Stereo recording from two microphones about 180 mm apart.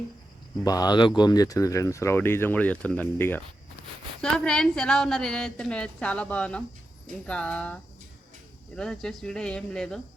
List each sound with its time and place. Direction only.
0.6 s a woman's voice: 20° left (ahead or behind); by 10.0 s 5° left (ahead or behind)